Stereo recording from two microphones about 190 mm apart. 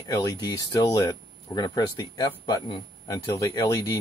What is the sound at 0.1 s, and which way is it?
Speech, 20° left (ahead or behind).